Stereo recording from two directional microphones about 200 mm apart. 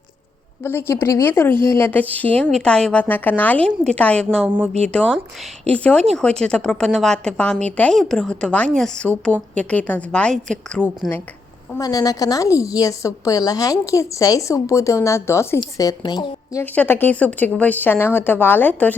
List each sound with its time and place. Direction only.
0.6 s a woman's voice: 10° left (ahead or behind)
11.8 s a woman's voice: 20° left (ahead or behind)